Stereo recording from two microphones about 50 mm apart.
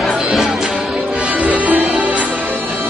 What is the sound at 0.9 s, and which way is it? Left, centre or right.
Music, right.